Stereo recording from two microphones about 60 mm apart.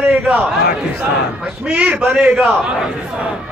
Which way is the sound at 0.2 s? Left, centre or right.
Centre.